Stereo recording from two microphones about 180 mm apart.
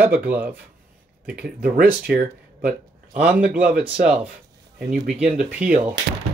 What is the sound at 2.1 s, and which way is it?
Speech, 55° right (ahead or behind).